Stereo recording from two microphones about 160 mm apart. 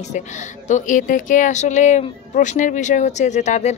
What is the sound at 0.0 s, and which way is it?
A woman's voice, 50° left (ahead or behind).